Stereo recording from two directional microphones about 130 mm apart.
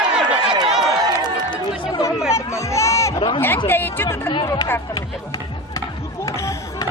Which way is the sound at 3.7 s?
15° left (ahead or behind).